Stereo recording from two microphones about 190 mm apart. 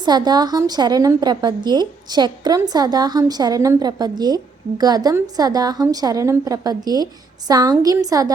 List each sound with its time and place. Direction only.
0.0 s a woman's voice: 20° right (ahead or behind)